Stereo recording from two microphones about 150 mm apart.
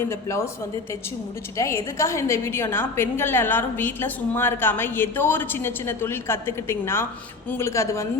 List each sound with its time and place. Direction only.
0.0 s a woman's voice: 20° left (ahead or behind)
1.5 s a woman's voice: 20° left (ahead or behind)